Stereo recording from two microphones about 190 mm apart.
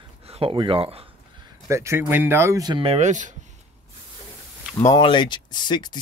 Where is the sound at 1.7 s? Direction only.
15° right (ahead or behind); by 3.3 s 40° right (ahead or behind).